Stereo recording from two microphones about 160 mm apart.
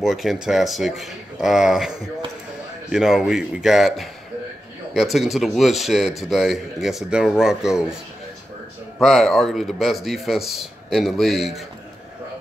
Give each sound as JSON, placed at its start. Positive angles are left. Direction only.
{"t": 0.0, "sound": "a man's voice", "side_deg": 0}
{"t": 9.0, "sound": "a man's voice", "side_deg": 0}